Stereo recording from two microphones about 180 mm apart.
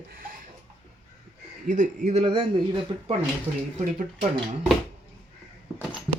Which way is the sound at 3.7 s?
30° right (ahead or behind).